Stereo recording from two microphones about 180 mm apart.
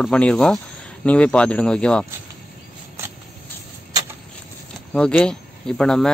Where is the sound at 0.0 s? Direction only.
5° left (ahead or behind).